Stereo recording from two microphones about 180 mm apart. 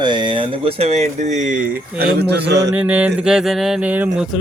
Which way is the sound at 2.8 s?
10° right (ahead or behind).